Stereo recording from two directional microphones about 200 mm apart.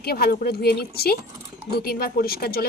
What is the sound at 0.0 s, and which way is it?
Speech, 50° left (ahead or behind).